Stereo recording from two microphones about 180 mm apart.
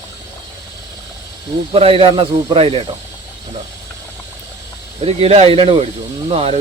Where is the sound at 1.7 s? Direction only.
30° right (ahead or behind).